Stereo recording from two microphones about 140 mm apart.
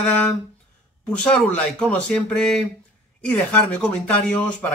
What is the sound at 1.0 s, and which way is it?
Speech, 10° left (ahead or behind).